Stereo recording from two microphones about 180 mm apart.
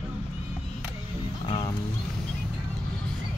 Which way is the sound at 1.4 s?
25° left (ahead or behind).